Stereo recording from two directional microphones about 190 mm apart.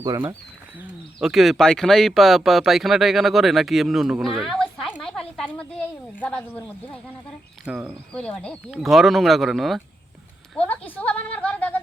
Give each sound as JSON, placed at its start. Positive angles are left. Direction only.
{"t": 0.0, "sound": "speech", "side_deg": -20}
{"t": 0.8, "sound": "speech", "side_deg": 0}
{"t": 7.6, "sound": "speech", "side_deg": -5}
{"t": 8.1, "sound": "speech", "side_deg": 5}
{"t": 10.5, "sound": "a sound", "side_deg": 5}